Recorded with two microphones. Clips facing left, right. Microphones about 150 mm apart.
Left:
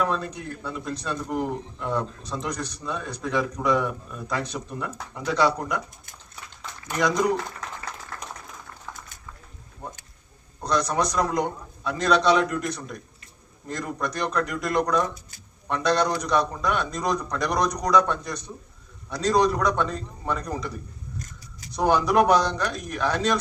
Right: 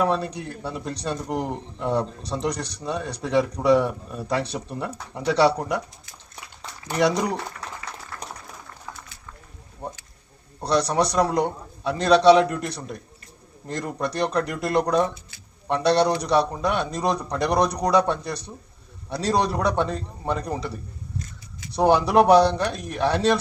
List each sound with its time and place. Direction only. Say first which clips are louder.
0.0 s speech: right 3 dB; 35° right (ahead or behind)
6.6 s a sound: right 4 dB; 30° right (ahead or behind)
10.6 s speech: right 3 dB; 35° right (ahead or behind)
21.8 s speech: right 3 dB; 30° right (ahead or behind)